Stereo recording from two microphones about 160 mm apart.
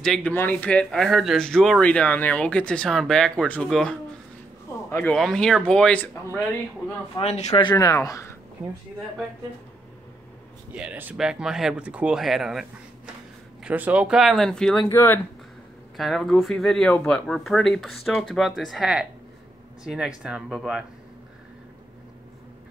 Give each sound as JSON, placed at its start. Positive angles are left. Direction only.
{"t": 0.0, "sound": "speech", "side_deg": 5}
{"t": 4.9, "sound": "speech", "side_deg": 5}
{"t": 7.2, "sound": "speech", "side_deg": 45}
{"t": 7.5, "sound": "speech", "side_deg": 25}
{"t": 10.7, "sound": "speech", "side_deg": -5}
{"t": 14.9, "sound": "speech", "side_deg": 15}
{"t": 16.0, "sound": "speech", "side_deg": 0}